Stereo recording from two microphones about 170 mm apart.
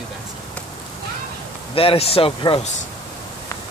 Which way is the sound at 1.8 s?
35° left (ahead or behind).